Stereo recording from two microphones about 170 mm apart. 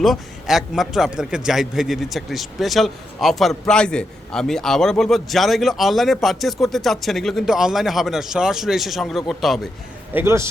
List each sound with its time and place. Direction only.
0.0 s a man's voice: centre (ahead or behind)
10.2 s a man's voice: 15° right (ahead or behind)